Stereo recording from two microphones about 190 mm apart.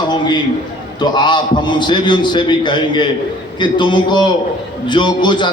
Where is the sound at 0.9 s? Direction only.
25° left (ahead or behind).